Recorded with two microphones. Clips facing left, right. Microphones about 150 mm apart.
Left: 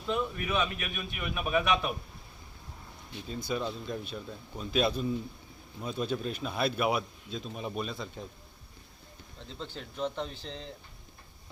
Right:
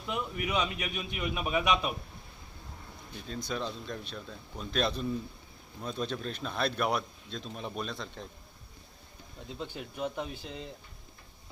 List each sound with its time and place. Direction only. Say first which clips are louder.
0.1 s a man's voice: left 2 dB; 15° right (ahead or behind)
3.2 s speech: left 2 dB; 5° left (ahead or behind)
9.6 s a man's voice: left 1 dB; 15° right (ahead or behind)